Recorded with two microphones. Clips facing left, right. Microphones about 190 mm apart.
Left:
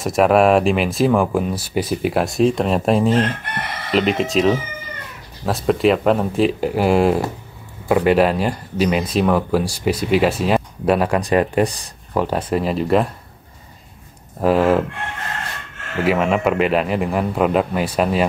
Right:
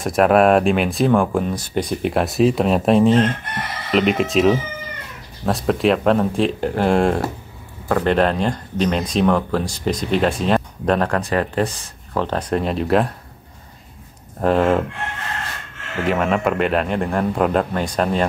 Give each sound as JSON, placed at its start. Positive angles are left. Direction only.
{"t": 0.0, "sound": "speech", "side_deg": 0}
{"t": 14.4, "sound": "speech", "side_deg": 5}
{"t": 16.1, "sound": "speech", "side_deg": 0}